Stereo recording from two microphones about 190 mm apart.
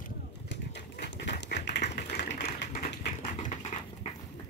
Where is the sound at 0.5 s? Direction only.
65° left (ahead or behind); by 4.1 s 35° left (ahead or behind).